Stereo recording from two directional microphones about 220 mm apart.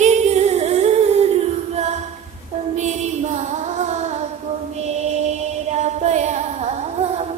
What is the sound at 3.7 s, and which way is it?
Music, 30° right (ahead or behind).